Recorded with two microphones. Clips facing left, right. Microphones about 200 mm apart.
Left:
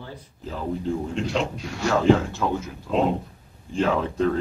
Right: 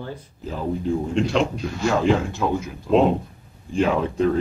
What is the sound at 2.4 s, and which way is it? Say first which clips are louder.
Speech: right 4 dB; 10° right (ahead or behind).